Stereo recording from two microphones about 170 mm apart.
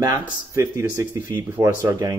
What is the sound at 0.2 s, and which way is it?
Speech, 15° right (ahead or behind).